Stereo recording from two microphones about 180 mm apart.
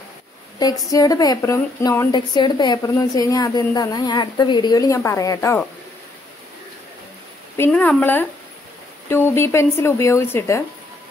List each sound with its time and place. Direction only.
0.6 s a woman's voice: 20° left (ahead or behind)
7.5 s a woman's voice: 10° left (ahead or behind)